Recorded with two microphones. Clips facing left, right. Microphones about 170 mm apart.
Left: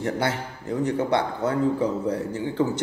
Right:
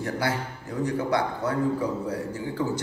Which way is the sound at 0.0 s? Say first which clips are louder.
Left 2 dB; 25° left (ahead or behind).